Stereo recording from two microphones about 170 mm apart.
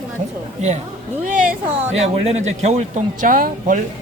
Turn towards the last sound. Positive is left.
turn(degrees=-55)  # may be behind; listen again after turning